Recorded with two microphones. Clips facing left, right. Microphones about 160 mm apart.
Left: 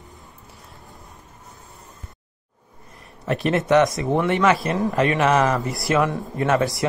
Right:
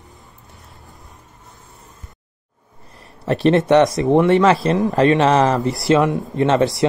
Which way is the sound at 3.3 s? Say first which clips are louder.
Right 5 dB; 30° right (ahead or behind).